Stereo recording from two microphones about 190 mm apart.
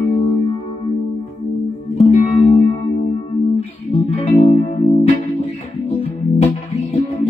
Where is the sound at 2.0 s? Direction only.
35° left (ahead or behind).